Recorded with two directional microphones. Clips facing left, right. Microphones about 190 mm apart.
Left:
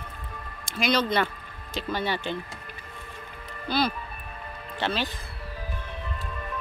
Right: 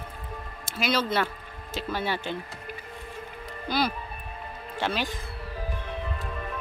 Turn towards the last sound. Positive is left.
turn(degrees=-10)  # may be behind; listen again after turning